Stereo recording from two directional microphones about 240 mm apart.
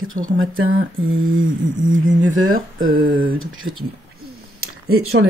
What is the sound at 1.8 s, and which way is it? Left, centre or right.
Speech, right.